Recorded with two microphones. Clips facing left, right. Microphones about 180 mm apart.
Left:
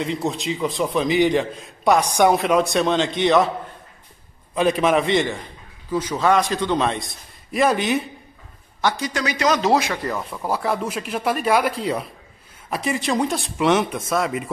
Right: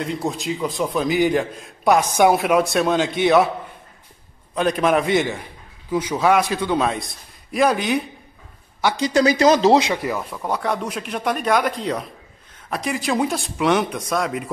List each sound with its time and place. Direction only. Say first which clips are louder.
0.0 s a man's voice: left 1 dB; centre (ahead or behind)
4.6 s a man's voice: even; centre (ahead or behind)
9.0 s speech: right 12 dB; 35° right (ahead or behind)
10.1 s a man's voice: even; centre (ahead or behind)